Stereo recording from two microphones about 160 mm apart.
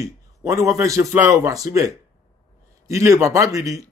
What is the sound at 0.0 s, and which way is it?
Speech, 20° right (ahead or behind).